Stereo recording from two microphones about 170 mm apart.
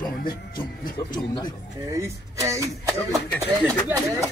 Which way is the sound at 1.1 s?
25° left (ahead or behind).